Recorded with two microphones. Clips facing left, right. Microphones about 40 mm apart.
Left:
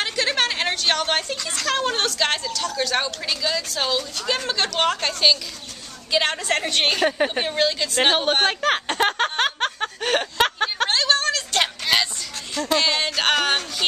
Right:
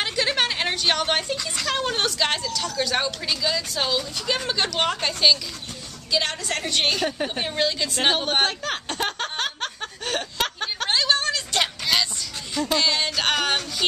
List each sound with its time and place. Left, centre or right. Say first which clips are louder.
0.0 s a sound: left 1 dB; centre
1.8 s a woman's voice: left 1 dB; centre
6.2 s speech: left 5 dB; centre
8.0 s speech: left 3 dB; centre
8.5 s speech: left 7 dB; left
8.8 s a sound: left 6 dB; left
10.9 s a sound: right 2 dB; centre
11.6 s music: left 2 dB; centre
12.7 s speech: left 2 dB; centre